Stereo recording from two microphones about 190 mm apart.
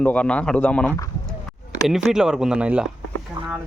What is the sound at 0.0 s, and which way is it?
Speech, 5° left (ahead or behind).